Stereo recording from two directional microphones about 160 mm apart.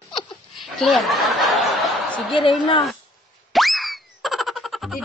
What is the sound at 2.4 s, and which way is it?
Speech, 35° left (ahead or behind).